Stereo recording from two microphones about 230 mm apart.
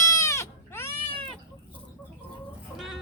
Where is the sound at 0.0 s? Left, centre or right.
Centre.